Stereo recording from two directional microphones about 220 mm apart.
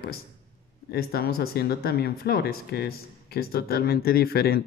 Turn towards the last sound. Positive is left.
turn(degrees=45)  # may be behind; listen again after turning